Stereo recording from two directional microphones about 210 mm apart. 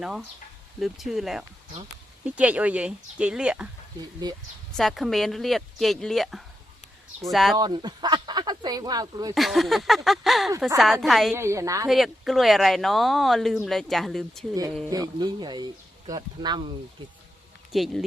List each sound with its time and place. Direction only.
0.0 s speech: centre (ahead or behind)
4.2 s speech: 20° right (ahead or behind)
4.8 s speech: centre (ahead or behind)
7.5 s speech: 20° right (ahead or behind)
9.3 s speech: centre (ahead or behind)
11.3 s a woman's voice: 15° right (ahead or behind)
11.9 s speech: centre (ahead or behind)
14.8 s speech: 15° right (ahead or behind)
17.7 s speech: centre (ahead or behind)